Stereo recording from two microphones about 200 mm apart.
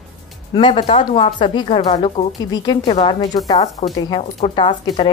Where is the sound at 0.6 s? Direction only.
25° left (ahead or behind).